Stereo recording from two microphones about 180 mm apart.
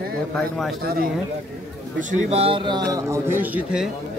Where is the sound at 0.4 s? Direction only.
Centre (ahead or behind).